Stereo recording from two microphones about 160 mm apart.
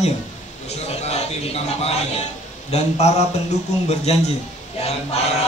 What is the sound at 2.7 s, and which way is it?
A man's voice, 45° left (ahead or behind).